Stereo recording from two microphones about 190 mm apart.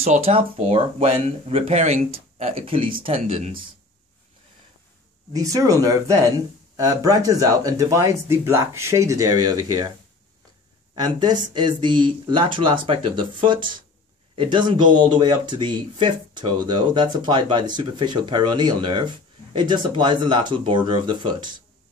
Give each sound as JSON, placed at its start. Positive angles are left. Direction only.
{"t": 0.0, "sound": "speech", "side_deg": -30}
{"t": 5.3, "sound": "speech", "side_deg": -15}
{"t": 11.0, "sound": "speech", "side_deg": -20}